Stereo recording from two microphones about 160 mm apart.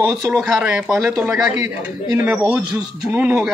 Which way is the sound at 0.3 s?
Centre (ahead or behind).